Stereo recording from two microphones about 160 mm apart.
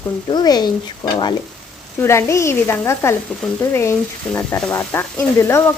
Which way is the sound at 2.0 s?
15° left (ahead or behind).